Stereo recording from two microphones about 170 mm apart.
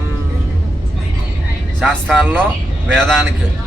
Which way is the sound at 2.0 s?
5° left (ahead or behind).